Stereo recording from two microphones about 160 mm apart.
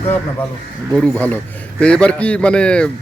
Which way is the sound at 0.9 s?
5° left (ahead or behind).